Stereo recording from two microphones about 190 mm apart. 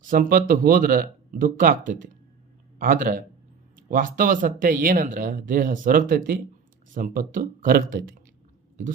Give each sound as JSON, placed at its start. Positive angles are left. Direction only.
{"t": 0.0, "sound": "a man's voice", "side_deg": -45}